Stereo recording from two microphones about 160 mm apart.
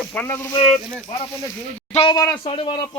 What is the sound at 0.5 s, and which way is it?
Speech, 35° left (ahead or behind).